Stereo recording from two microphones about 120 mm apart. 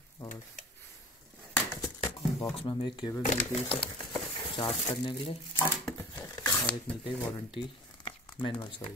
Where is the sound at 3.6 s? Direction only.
40° left (ahead or behind).